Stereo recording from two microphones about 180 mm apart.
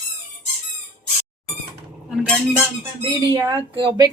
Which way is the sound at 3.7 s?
25° right (ahead or behind).